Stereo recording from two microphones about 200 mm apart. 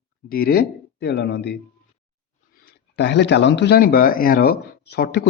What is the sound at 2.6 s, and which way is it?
Speech, 55° left (ahead or behind).